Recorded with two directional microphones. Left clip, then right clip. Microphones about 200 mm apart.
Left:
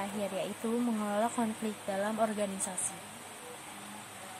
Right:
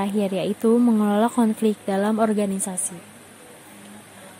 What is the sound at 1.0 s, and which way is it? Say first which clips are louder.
Speech: right 11 dB; 40° right (ahead or behind).